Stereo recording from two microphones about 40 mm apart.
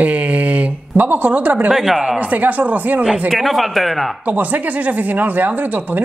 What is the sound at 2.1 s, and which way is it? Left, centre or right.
Speech, right.